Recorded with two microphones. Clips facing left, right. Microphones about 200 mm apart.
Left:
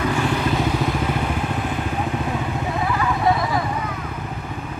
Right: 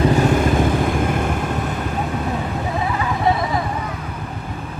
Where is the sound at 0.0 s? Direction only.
40° right (ahead or behind).